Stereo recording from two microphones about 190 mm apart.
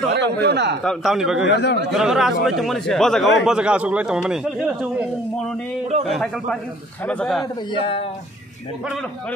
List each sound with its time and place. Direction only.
0.1 s speech: 60° right (ahead or behind)
0.8 s a man's voice: centre (ahead or behind)
1.5 s speech: 65° left (ahead or behind)
1.9 s a man's voice: centre (ahead or behind)
6.0 s a man's voice: centre (ahead or behind)